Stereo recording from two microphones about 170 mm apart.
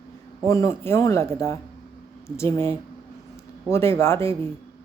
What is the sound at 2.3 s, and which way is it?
Speech, 15° left (ahead or behind).